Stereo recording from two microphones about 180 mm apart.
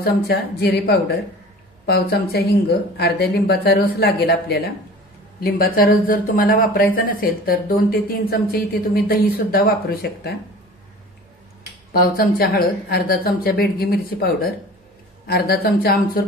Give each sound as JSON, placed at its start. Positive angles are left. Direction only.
{"t": 0.0, "sound": "speech", "side_deg": 65}
{"t": 11.9, "sound": "speech", "side_deg": 55}